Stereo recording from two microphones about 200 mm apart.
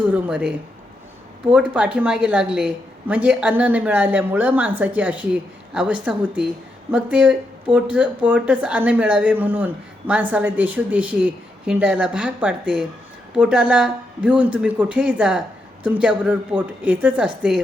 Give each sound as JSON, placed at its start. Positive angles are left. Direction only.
{"t": 0.1, "sound": "speech", "side_deg": -5}
{"t": 1.5, "sound": "speech", "side_deg": -5}